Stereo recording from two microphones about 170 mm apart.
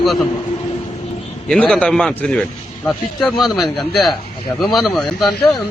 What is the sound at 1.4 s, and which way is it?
A man's voice, 5° left (ahead or behind).